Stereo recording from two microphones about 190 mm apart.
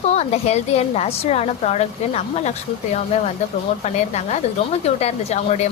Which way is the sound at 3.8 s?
35° left (ahead or behind).